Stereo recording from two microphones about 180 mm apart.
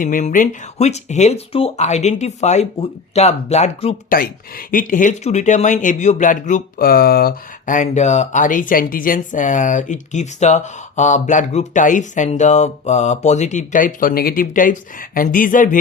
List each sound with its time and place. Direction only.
0.0 s speech: 45° left (ahead or behind)
4.1 s speech: 55° left (ahead or behind)